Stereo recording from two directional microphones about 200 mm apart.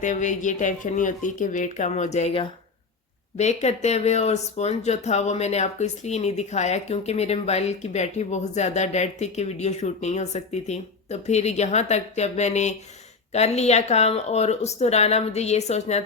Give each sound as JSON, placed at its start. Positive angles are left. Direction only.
{"t": 0.0, "sound": "speech", "side_deg": 40}